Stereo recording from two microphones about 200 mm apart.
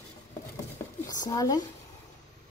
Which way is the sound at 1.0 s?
20° left (ahead or behind).